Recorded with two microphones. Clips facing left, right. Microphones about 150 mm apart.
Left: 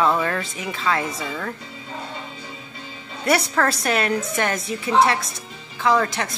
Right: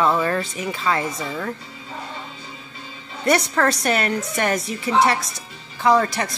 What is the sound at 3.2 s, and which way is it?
Speech, 5° left (ahead or behind).